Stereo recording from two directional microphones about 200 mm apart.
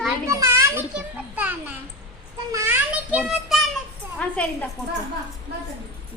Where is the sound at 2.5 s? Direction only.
15° right (ahead or behind); by 4.5 s 5° left (ahead or behind).